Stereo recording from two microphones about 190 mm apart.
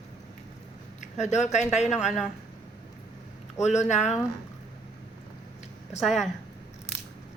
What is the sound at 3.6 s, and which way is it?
Speech, 40° left (ahead or behind).